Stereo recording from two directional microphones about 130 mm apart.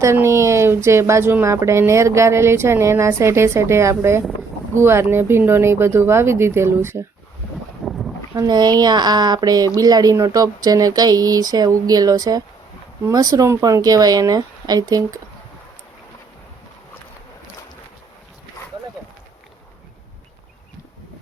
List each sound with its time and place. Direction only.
0.0 s speech: 20° right (ahead or behind)
7.9 s boat: centre (ahead or behind)
8.4 s speech: 30° right (ahead or behind)